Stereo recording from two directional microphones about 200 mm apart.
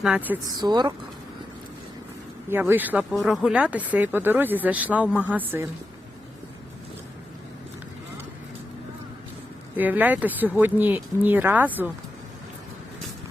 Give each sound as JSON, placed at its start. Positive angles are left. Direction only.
{"t": 0.0, "sound": "speech", "side_deg": -5}
{"t": 0.5, "sound": "speech", "side_deg": -20}
{"t": 2.5, "sound": "speech", "side_deg": -10}
{"t": 9.7, "sound": "speech", "side_deg": -10}